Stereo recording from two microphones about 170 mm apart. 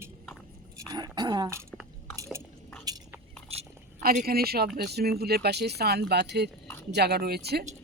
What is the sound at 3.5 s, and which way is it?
Chewing, 35° right (ahead or behind).